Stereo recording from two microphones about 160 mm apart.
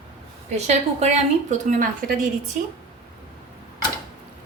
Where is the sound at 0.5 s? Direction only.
45° right (ahead or behind).